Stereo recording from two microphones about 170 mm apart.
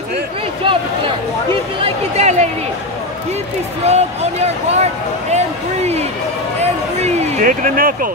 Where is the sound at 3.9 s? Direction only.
40° right (ahead or behind); by 8.1 s 55° right (ahead or behind).